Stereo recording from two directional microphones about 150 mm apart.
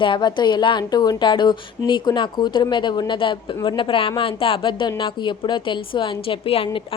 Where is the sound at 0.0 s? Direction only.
30° left (ahead or behind).